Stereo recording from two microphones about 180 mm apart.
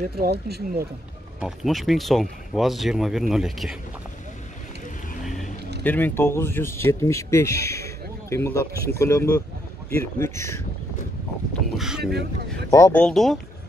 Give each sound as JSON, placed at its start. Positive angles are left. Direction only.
{"t": 0.2, "sound": "speech", "side_deg": -60}
{"t": 1.4, "sound": "speech", "side_deg": 0}
{"t": 5.9, "sound": "speech", "side_deg": 10}
{"t": 11.7, "sound": "boat", "side_deg": 0}
{"t": 12.0, "sound": "speech", "side_deg": -65}
{"t": 12.7, "sound": "speech", "side_deg": 15}
{"t": 13.0, "sound": "speech", "side_deg": 0}